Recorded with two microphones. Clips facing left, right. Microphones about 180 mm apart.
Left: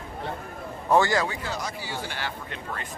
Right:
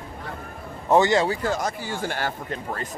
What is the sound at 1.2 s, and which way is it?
Speech, 45° right (ahead or behind).